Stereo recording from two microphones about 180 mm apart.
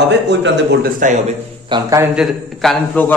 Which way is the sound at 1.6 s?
25° right (ahead or behind).